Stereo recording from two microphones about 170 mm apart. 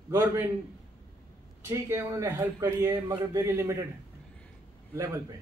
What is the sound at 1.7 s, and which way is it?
Speech, 15° right (ahead or behind).